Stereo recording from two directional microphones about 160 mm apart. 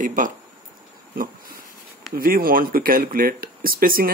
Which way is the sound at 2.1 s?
65° right (ahead or behind).